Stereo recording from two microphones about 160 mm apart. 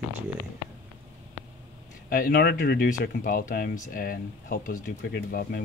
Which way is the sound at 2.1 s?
65° left (ahead or behind).